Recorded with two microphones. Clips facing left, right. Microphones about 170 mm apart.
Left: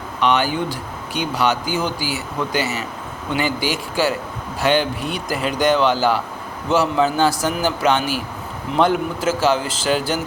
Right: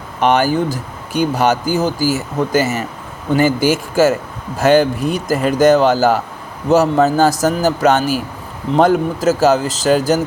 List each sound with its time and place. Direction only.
0.2 s a man's voice: 45° right (ahead or behind)